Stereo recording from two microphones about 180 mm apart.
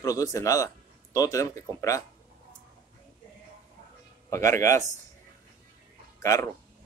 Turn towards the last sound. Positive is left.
turn(degrees=15)  # may be behind; listen again after turning